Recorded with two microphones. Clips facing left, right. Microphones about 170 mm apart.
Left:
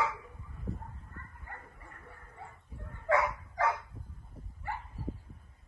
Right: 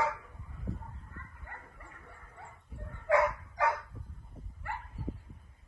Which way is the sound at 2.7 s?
65° right (ahead or behind).